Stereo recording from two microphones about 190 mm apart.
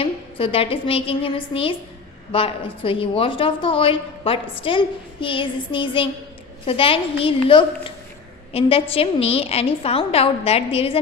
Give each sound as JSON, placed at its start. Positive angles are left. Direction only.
{"t": 0.0, "sound": "a woman's voice", "side_deg": 30}